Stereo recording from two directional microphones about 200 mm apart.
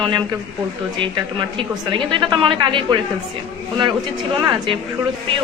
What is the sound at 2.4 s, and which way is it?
Speech, 25° right (ahead or behind).